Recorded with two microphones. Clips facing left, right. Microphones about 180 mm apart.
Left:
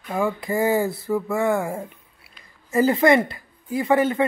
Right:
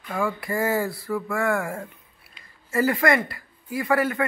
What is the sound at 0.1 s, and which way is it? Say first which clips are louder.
Speech: left 3 dB; 20° left (ahead or behind).